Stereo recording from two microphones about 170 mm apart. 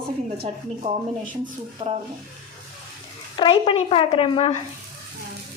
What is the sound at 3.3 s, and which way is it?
A woman's voice, 30° left (ahead or behind).